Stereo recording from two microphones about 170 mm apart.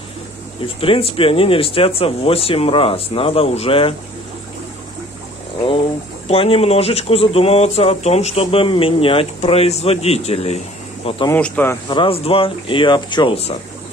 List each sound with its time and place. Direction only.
0.7 s speech: 35° left (ahead or behind)
6.2 s speech: 35° left (ahead or behind)
11.2 s speech: 10° left (ahead or behind)
11.9 s speech: 30° left (ahead or behind)